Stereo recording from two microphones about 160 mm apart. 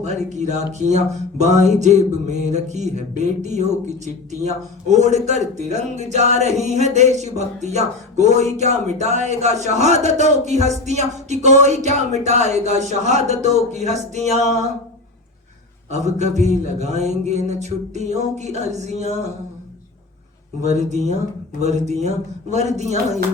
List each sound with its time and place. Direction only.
0.0 s speech: 45° right (ahead or behind)
15.9 s speech: 45° right (ahead or behind)
20.6 s speech: 45° right (ahead or behind)